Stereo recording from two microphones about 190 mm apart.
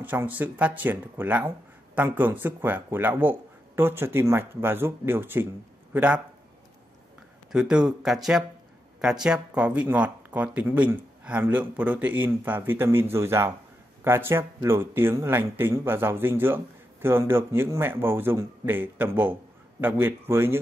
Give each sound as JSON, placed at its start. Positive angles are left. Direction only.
{"t": 0.0, "sound": "speech", "side_deg": -10}
{"t": 7.5, "sound": "speech", "side_deg": -5}